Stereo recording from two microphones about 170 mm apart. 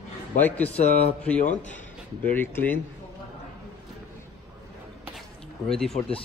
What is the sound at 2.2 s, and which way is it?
Speech, 10° left (ahead or behind).